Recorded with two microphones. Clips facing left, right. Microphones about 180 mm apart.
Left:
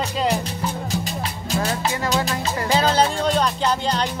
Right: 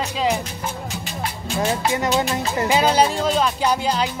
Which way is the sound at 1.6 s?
20° right (ahead or behind).